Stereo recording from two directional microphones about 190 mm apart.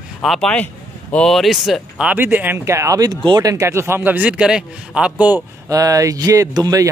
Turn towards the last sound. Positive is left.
turn(degrees=-20)  # may be behind; listen again after turning